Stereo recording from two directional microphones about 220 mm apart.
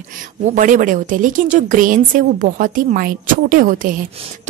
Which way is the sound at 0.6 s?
35° right (ahead or behind).